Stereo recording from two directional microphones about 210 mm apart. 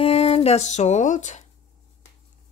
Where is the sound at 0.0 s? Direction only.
30° left (ahead or behind).